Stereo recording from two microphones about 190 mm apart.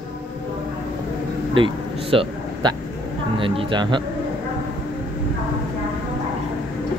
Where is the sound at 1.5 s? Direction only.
25° right (ahead or behind).